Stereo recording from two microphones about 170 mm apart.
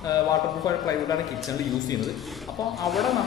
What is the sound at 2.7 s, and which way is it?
Speech, centre (ahead or behind).